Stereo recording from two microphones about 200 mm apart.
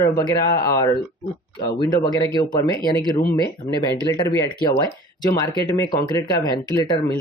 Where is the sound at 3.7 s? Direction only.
20° left (ahead or behind).